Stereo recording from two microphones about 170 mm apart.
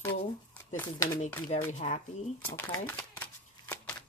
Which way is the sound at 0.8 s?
20° left (ahead or behind).